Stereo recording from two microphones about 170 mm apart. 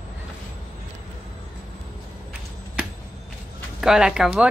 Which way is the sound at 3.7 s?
5° right (ahead or behind).